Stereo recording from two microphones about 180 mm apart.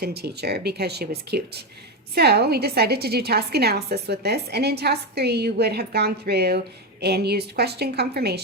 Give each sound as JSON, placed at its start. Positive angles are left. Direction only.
{"t": 0.0, "sound": "a woman's voice", "side_deg": -65}